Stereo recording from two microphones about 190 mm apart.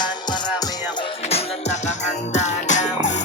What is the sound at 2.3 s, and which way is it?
Music, 40° left (ahead or behind).